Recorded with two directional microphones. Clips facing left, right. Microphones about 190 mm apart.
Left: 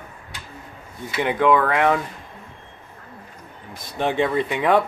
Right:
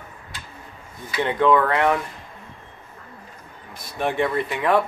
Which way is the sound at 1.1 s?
10° left (ahead or behind).